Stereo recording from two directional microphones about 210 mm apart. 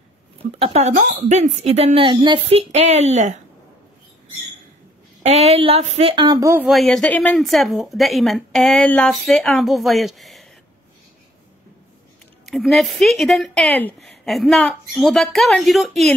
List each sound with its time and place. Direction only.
0.6 s a woman's voice: 30° right (ahead or behind)
5.2 s speech: 30° right (ahead or behind)
6.6 s a woman's voice: centre (ahead or behind)
12.4 s a woman's voice: centre (ahead or behind)